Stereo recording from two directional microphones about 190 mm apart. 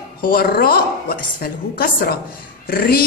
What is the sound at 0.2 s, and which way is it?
A woman's voice, 50° left (ahead or behind).